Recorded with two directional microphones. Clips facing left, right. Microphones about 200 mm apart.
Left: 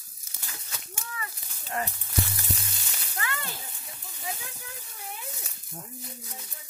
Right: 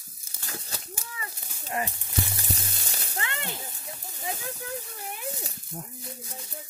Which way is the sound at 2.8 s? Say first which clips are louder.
Right 4 dB; 40° right (ahead or behind).